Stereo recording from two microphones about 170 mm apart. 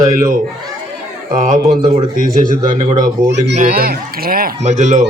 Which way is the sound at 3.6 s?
55° right (ahead or behind).